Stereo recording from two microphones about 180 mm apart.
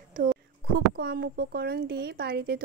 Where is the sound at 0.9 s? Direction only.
65° right (ahead or behind).